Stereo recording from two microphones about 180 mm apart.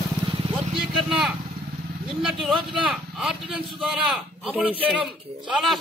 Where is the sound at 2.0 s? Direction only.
Centre (ahead or behind).